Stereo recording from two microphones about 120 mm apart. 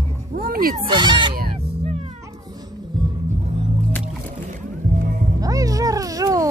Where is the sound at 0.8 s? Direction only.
40° right (ahead or behind).